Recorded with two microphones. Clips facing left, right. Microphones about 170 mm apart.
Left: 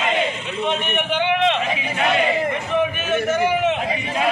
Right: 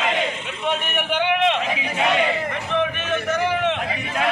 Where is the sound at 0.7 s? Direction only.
10° right (ahead or behind).